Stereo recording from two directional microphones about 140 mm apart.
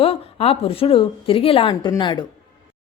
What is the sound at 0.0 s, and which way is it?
Speech, 45° left (ahead or behind).